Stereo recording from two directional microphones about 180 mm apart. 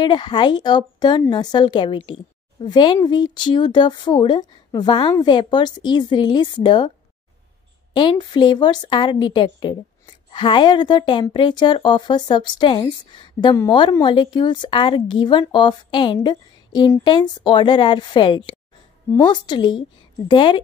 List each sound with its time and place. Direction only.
0.0 s a woman's voice: 25° left (ahead or behind)
7.9 s a woman's voice: 25° left (ahead or behind)